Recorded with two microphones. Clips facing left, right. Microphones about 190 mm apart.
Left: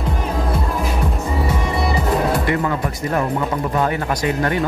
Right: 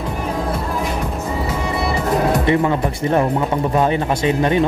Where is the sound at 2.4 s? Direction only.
20° right (ahead or behind).